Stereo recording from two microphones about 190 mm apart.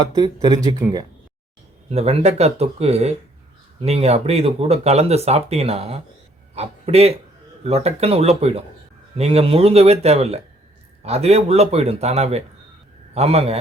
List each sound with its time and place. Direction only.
0.0 s speech: 20° right (ahead or behind)
1.9 s speech: 35° right (ahead or behind)